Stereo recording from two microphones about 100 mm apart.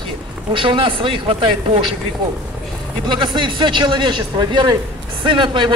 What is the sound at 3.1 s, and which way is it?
Speech, 50° right (ahead or behind).